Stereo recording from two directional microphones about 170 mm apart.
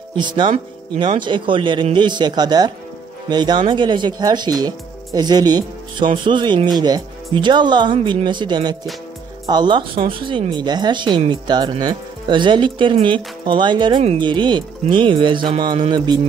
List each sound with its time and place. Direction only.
0.1 s speech: 25° right (ahead or behind)